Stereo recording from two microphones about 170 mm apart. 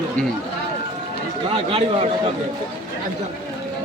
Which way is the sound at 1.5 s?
35° right (ahead or behind).